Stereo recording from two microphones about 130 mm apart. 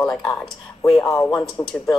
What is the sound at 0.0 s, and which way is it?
Speech, 5° left (ahead or behind).